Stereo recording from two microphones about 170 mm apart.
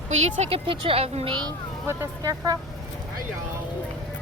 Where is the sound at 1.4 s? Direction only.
20° right (ahead or behind).